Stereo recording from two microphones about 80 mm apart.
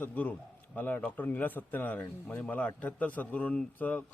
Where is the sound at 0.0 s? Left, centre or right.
Centre.